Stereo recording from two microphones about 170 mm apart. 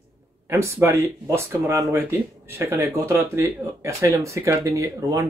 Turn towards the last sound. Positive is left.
turn(degrees=-20)  # may be behind; listen again after turning